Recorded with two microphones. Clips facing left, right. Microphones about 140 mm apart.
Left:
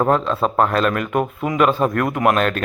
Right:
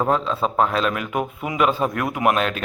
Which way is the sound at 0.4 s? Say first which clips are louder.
Left 2 dB; 50° left (ahead or behind).